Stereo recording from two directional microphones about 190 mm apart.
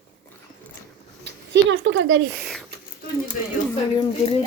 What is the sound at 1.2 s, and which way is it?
A woman's voice, 75° right (ahead or behind).